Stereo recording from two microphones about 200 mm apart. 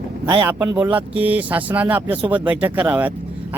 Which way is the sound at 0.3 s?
20° right (ahead or behind).